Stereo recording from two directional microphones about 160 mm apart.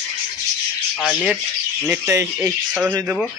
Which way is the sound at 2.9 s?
20° right (ahead or behind).